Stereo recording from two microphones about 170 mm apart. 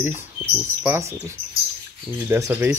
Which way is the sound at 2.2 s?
15° right (ahead or behind).